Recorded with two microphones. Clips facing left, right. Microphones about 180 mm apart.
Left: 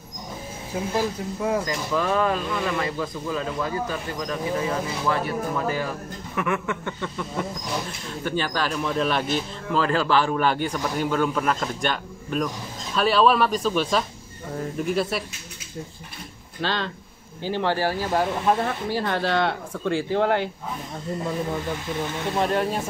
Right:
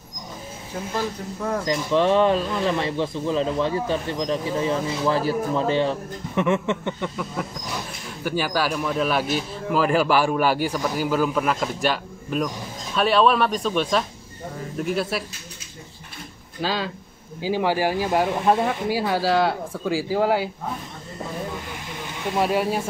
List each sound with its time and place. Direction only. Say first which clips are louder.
0.9 s speech: left 1 dB; 10° left (ahead or behind)
1.7 s speech: right 5 dB; 30° right (ahead or behind)
8.2 s speech: right 2 dB; 10° right (ahead or behind)
16.6 s speech: right 1 dB; 5° right (ahead or behind)
22.4 s speech: right 2 dB; 5° right (ahead or behind)